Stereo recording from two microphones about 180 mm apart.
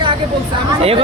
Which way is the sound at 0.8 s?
35° right (ahead or behind).